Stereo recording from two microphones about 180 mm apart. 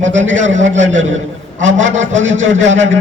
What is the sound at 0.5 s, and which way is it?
Speech, 40° right (ahead or behind).